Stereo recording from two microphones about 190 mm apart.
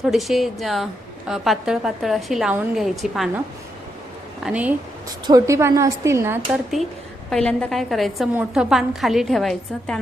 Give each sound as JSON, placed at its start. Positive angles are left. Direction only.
{"t": 0.0, "sound": "a woman's voice", "side_deg": 0}
{"t": 4.4, "sound": "a woman's voice", "side_deg": -5}
{"t": 5.0, "sound": "a woman's voice", "side_deg": -20}
{"t": 6.5, "sound": "a woman's voice", "side_deg": 0}